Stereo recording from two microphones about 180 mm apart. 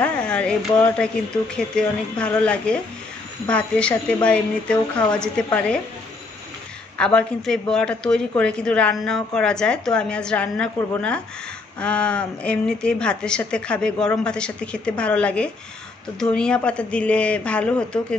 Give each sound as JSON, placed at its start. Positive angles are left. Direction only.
{"t": 0.0, "sound": "a woman's voice", "side_deg": 5}
{"t": 7.0, "sound": "a woman's voice", "side_deg": 5}